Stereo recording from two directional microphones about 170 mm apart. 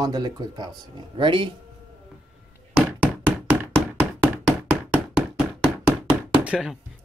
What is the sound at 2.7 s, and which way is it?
Knock, 10° right (ahead or behind).